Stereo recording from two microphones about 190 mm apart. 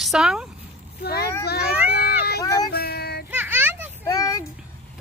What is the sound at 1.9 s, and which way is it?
Run, 55° left (ahead or behind).